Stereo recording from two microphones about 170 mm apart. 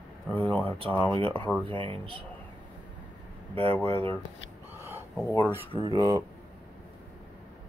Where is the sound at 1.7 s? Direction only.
30° right (ahead or behind).